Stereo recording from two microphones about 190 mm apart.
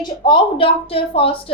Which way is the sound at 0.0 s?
25° left (ahead or behind).